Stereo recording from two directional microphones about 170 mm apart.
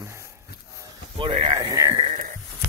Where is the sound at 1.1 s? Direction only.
30° right (ahead or behind).